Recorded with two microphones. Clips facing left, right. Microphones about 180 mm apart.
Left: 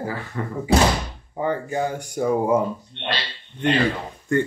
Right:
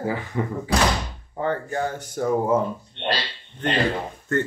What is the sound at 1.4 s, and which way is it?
Speech, 10° left (ahead or behind).